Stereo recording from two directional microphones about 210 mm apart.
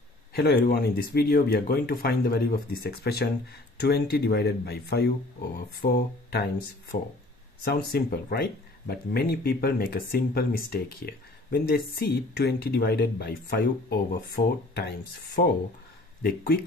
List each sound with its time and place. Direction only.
0.3 s speech: 50° left (ahead or behind)
7.6 s speech: 45° left (ahead or behind)